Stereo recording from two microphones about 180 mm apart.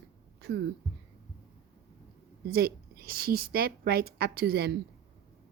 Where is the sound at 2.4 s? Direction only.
60° right (ahead or behind).